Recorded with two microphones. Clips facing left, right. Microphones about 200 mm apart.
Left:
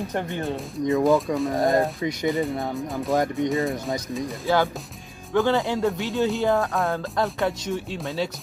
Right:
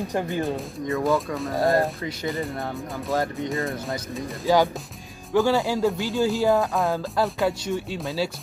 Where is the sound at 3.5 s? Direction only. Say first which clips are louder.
Left 3 dB; centre (ahead or behind).